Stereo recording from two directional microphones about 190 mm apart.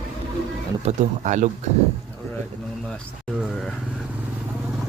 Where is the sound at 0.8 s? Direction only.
35° right (ahead or behind).